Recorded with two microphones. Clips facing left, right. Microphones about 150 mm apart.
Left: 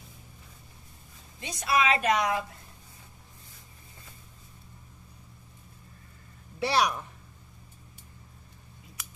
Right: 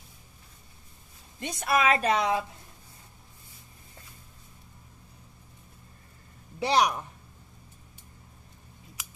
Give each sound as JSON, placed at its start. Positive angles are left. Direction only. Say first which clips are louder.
{"t": 1.4, "sound": "a woman's voice", "louder": "right 1 dB", "side_deg": -55}
{"t": 2.0, "sound": "speech", "louder": "right 1 dB", "side_deg": -30}
{"t": 6.6, "sound": "a man's voice", "louder": "right 2 dB", "side_deg": -15}